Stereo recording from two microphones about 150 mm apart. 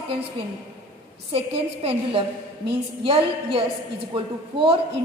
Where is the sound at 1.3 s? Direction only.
40° right (ahead or behind).